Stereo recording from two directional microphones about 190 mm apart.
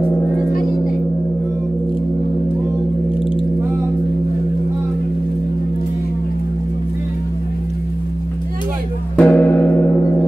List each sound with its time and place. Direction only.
0.0 s music: 50° left (ahead or behind)
9.1 s music: 10° left (ahead or behind)